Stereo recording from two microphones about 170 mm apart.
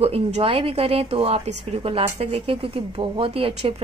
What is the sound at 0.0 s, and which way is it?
A woman's voice, 35° right (ahead or behind).